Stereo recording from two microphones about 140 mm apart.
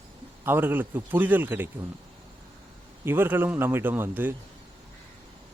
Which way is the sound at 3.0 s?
15° right (ahead or behind).